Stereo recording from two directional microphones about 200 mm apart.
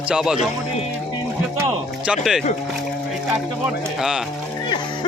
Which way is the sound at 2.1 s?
5° right (ahead or behind).